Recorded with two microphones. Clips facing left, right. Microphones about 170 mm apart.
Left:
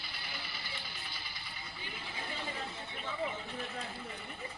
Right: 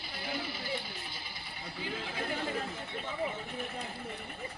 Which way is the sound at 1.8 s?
90° right.